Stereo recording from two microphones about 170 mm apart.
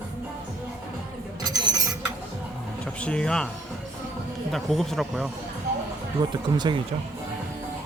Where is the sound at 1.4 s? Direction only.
25° right (ahead or behind).